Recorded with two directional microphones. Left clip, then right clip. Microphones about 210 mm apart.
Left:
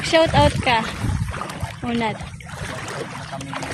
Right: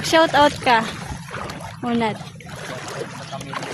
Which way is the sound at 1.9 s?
15° right (ahead or behind).